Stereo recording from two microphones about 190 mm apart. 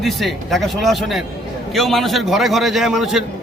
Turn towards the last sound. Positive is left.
turn(degrees=0)  # may be behind; listen again after turning